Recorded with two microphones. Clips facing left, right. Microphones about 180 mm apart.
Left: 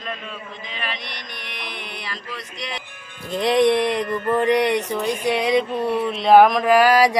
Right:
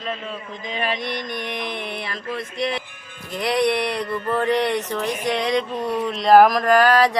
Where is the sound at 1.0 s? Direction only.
50° right (ahead or behind).